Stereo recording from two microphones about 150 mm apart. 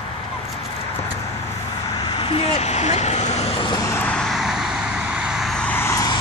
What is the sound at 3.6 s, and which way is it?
Vehicle, 25° left (ahead or behind).